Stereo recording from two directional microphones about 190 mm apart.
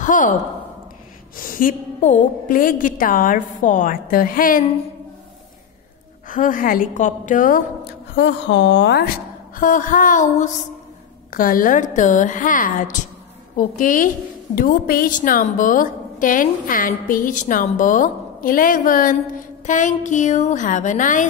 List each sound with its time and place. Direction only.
0.0 s a woman's voice: 45° left (ahead or behind)
1.3 s a woman's voice: 45° left (ahead or behind)
6.2 s a woman's voice: 45° left (ahead or behind)
8.2 s speech: 65° left (ahead or behind)
9.6 s a woman's voice: 45° left (ahead or behind)